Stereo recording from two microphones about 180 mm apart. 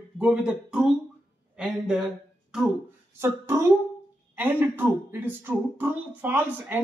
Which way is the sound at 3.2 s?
15° right (ahead or behind).